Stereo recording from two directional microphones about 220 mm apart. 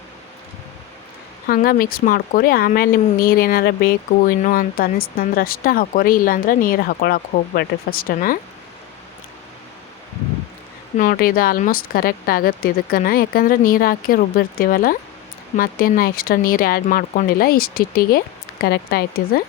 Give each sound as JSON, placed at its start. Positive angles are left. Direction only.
{"t": 1.5, "sound": "speech", "side_deg": 40}
{"t": 10.9, "sound": "speech", "side_deg": 40}